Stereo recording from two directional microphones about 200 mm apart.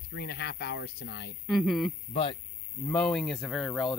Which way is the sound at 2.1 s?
25° left (ahead or behind).